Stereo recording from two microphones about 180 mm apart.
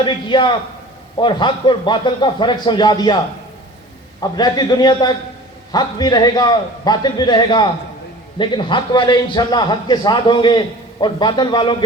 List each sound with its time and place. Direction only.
0.0 s a man's voice: 25° left (ahead or behind)
4.2 s a man's voice: 20° left (ahead or behind)